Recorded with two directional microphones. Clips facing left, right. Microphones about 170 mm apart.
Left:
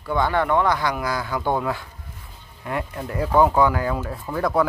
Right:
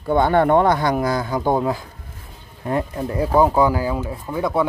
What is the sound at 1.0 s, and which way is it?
Speech, 25° right (ahead or behind).